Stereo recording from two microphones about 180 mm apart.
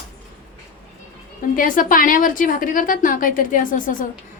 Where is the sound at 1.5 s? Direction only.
50° left (ahead or behind).